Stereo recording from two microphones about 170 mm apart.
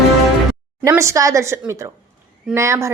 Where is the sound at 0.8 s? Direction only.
20° right (ahead or behind).